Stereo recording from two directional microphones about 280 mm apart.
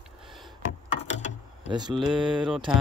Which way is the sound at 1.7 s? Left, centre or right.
Centre.